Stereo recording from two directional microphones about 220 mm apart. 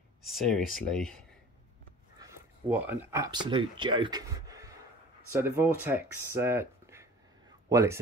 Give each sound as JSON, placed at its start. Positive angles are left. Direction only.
{"t": 0.2, "sound": "speech", "side_deg": 0}
{"t": 2.7, "sound": "speech", "side_deg": -10}